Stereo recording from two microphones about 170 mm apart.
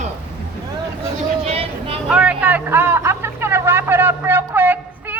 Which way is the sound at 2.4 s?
10° right (ahead or behind).